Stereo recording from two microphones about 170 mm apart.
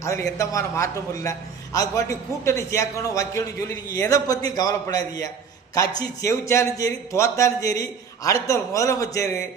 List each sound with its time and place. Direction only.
0.0 s a man's voice: 20° left (ahead or behind)